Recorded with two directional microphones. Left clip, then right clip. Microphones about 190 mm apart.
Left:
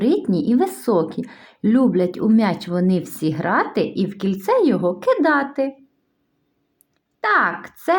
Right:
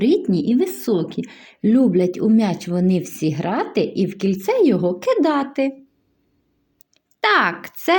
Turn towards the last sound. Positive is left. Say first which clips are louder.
# right 1 dB
turn(degrees=-25)  # may be behind; listen again after turning